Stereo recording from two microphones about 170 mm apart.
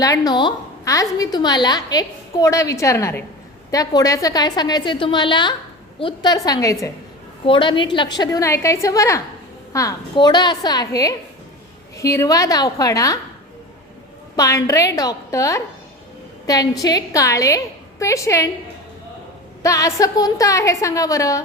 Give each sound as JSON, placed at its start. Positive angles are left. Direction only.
{"t": 0.0, "sound": "a woman's voice", "side_deg": 20}
{"t": 14.3, "sound": "a woman's voice", "side_deg": 20}
{"t": 16.8, "sound": "a woman's voice", "side_deg": 20}
{"t": 19.6, "sound": "a woman's voice", "side_deg": 20}